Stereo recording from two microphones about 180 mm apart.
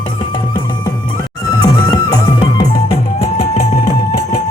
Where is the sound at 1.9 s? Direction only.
20° left (ahead or behind).